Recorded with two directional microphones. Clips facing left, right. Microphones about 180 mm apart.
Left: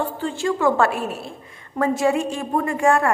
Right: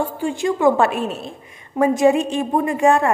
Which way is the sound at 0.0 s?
15° right (ahead or behind).